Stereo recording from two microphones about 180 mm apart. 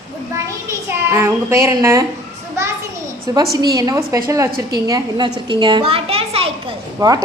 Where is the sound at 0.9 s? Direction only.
15° right (ahead or behind).